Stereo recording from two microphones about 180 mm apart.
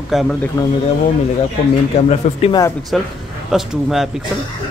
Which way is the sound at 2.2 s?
40° left (ahead or behind).